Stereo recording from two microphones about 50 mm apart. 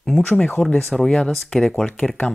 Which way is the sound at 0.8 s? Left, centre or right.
Centre.